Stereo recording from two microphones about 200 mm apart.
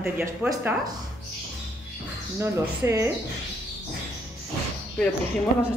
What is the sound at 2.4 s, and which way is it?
Speech, 15° right (ahead or behind).